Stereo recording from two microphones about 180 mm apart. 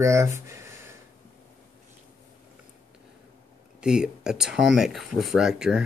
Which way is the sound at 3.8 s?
5° right (ahead or behind).